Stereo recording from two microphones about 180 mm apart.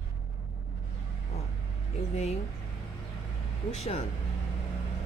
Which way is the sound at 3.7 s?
35° left (ahead or behind).